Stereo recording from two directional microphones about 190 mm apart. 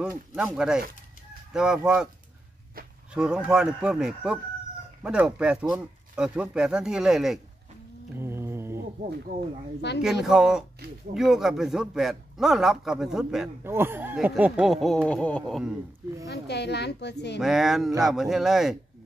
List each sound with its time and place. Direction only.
0.3 s speech: 5° right (ahead or behind)
3.1 s speech: 5° right (ahead or behind)
8.2 s mantra: 15° right (ahead or behind)
10.2 s speech: centre (ahead or behind)
16.3 s a woman's voice: 60° left (ahead or behind)
17.4 s speech: centre (ahead or behind)